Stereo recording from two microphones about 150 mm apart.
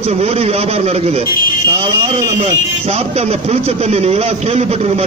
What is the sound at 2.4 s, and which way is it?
Speech, 40° right (ahead or behind).